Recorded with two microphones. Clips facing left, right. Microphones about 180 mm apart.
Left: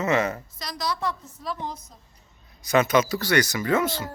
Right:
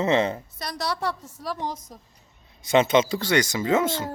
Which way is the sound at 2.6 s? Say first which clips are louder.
Right 1 dB; 25° right (ahead or behind).